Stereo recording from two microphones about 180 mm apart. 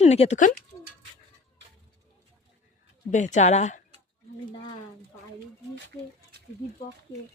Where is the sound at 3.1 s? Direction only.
40° left (ahead or behind).